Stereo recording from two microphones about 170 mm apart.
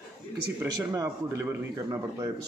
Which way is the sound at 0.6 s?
15° right (ahead or behind).